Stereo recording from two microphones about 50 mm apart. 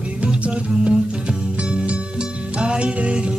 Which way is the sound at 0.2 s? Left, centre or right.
Right.